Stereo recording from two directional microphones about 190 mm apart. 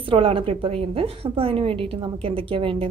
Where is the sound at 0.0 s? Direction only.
30° right (ahead or behind).